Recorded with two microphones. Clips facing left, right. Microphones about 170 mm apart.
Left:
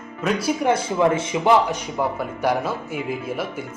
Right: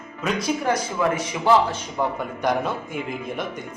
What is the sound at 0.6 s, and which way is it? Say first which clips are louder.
Speech: left 5 dB; 25° left (ahead or behind).